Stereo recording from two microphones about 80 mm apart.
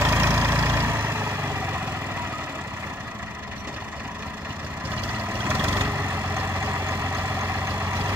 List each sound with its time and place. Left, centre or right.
0.0 s vehicle: right
5.4 s vehicle: right